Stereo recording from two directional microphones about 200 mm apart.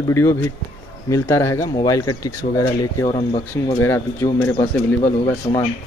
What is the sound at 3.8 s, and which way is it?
Speech, 10° left (ahead or behind).